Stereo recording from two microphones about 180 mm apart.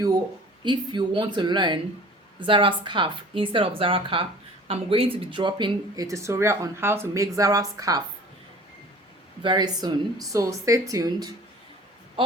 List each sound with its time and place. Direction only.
0.6 s speech: 25° right (ahead or behind)
9.4 s speech: 25° right (ahead or behind)